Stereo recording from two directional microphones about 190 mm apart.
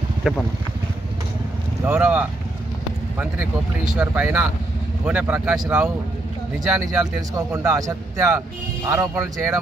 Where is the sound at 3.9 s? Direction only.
5° right (ahead or behind).